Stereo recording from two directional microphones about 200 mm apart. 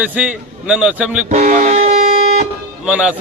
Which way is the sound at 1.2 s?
40° right (ahead or behind).